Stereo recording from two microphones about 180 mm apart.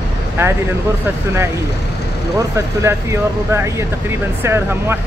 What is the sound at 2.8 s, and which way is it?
Speech, 15° right (ahead or behind).